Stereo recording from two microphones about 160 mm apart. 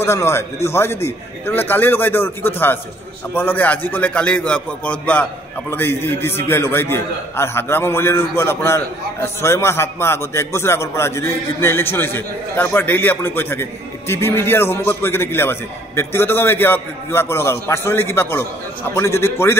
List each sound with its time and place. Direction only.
0.0 s a man's voice: 15° left (ahead or behind)